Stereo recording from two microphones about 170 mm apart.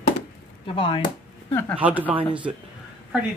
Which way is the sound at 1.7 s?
10° right (ahead or behind).